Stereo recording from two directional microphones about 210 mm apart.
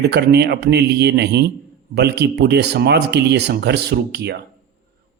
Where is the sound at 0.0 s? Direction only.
50° right (ahead or behind).